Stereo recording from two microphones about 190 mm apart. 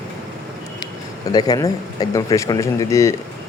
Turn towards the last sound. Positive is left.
turn(degrees=15)  # may be behind; listen again after turning